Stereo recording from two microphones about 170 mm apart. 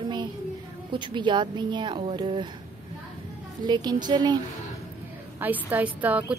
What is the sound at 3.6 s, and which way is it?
Speech, 25° right (ahead or behind).